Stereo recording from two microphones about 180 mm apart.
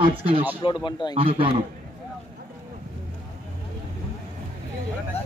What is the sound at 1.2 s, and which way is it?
Speech, 30° right (ahead or behind).